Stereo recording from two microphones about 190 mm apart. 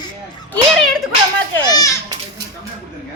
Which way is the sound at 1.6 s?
20° left (ahead or behind).